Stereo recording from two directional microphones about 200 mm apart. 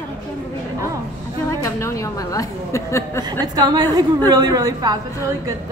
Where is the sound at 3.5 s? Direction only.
20° right (ahead or behind).